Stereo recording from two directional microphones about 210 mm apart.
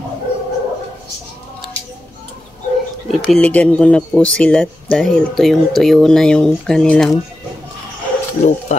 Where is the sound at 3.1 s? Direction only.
5° left (ahead or behind).